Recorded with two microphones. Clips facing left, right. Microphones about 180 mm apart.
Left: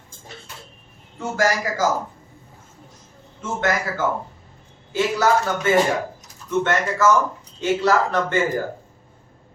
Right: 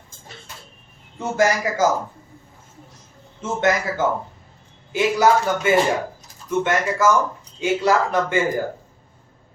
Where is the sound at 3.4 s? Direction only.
20° right (ahead or behind).